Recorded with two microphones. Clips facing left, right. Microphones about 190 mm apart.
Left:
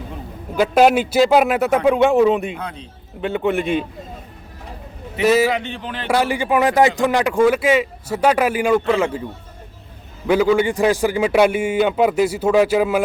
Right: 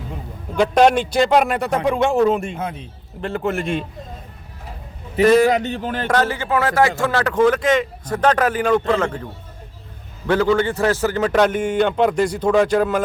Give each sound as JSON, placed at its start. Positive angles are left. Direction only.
{"t": 0.5, "sound": "a man's voice", "side_deg": 5}
{"t": 5.2, "sound": "a man's voice", "side_deg": 5}
{"t": 5.5, "sound": "speech", "side_deg": -40}
{"t": 6.1, "sound": "speech", "side_deg": 10}
{"t": 10.2, "sound": "speech", "side_deg": 10}